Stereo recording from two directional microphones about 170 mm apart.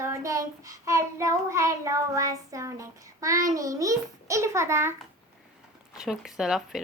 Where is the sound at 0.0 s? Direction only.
15° right (ahead or behind).